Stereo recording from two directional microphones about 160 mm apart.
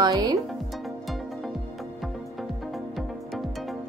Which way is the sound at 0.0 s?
25° right (ahead or behind).